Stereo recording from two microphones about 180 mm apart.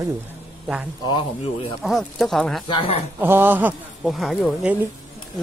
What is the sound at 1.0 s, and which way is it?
Speech, 25° left (ahead or behind).